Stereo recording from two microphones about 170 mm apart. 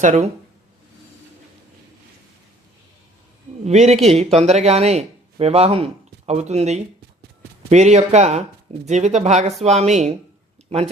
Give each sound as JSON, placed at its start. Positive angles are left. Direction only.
{"t": 0.0, "sound": "speech", "side_deg": -45}
{"t": 3.6, "sound": "speech", "side_deg": -40}